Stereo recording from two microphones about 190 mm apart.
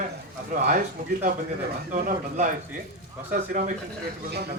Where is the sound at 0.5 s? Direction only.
45° right (ahead or behind).